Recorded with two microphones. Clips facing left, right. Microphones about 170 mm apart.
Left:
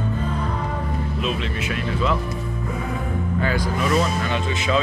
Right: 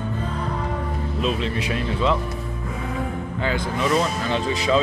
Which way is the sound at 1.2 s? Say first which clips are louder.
Right 5 dB; 35° right (ahead or behind).